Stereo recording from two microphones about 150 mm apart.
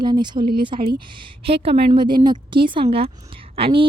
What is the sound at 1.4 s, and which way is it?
A woman's voice, 40° right (ahead or behind).